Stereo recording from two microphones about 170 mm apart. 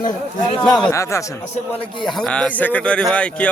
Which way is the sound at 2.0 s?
Centre (ahead or behind).